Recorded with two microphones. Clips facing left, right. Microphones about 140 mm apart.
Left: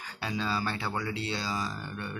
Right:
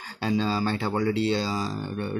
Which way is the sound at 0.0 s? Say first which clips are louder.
Right 8 dB; 30° right (ahead or behind).